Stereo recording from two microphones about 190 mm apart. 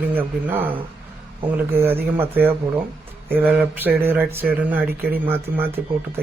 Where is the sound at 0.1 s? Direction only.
10° right (ahead or behind).